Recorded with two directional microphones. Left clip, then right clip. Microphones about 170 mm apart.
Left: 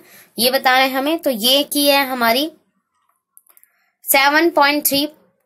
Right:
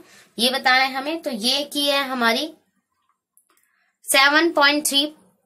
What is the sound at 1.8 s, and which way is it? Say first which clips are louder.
Speech: left 5 dB; 30° left (ahead or behind).